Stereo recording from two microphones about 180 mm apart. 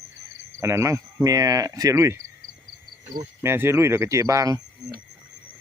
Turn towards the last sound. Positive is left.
turn(degrees=-20)  # may be behind; listen again after turning